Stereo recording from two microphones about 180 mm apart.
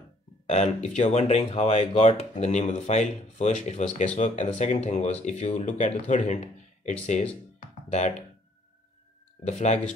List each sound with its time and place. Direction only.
0.5 s speech: 40° left (ahead or behind)
7.6 s music: 40° left (ahead or behind)
9.5 s speech: 40° left (ahead or behind)